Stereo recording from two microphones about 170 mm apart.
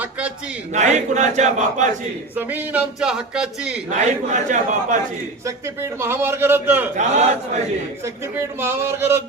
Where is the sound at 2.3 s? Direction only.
10° right (ahead or behind).